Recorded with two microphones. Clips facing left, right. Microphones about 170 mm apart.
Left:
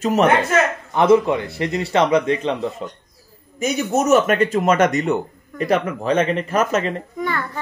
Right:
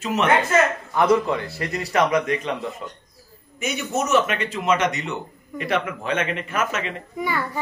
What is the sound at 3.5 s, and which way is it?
Speech, 40° left (ahead or behind).